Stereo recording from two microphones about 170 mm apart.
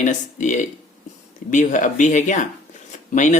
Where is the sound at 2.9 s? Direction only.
45° left (ahead or behind).